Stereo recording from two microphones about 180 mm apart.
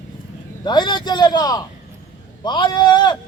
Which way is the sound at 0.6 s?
25° left (ahead or behind).